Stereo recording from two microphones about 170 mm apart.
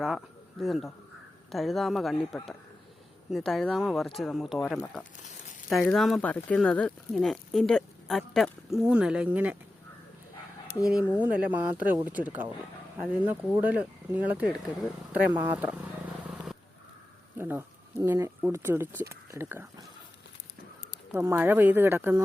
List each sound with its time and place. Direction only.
0.6 s speech: centre (ahead or behind)
5.1 s speech: 45° left (ahead or behind)
5.6 s speech: 5° left (ahead or behind)
10.9 s speech: 10° right (ahead or behind)
17.3 s speech: 15° right (ahead or behind)
21.1 s speech: 10° right (ahead or behind)